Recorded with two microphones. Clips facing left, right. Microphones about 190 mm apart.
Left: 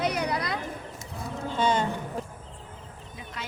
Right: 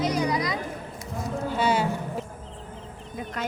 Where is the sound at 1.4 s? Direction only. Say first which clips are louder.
Right 1 dB; 10° right (ahead or behind).